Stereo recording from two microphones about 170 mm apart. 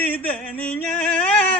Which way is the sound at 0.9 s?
5° left (ahead or behind).